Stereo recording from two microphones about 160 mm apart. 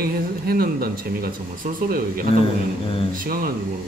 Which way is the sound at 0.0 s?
70° right (ahead or behind).